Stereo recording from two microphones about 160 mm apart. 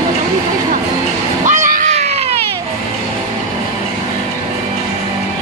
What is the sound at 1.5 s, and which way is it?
Baby cry, 55° right (ahead or behind).